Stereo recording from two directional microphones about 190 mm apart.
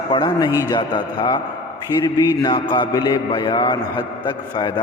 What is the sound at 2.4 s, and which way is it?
A man's voice, 25° left (ahead or behind).